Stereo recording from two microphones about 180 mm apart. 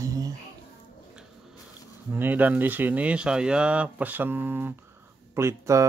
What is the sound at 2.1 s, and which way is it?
Speech, 10° right (ahead or behind).